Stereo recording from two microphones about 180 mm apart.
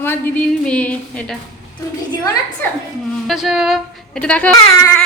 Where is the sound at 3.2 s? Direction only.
Centre (ahead or behind).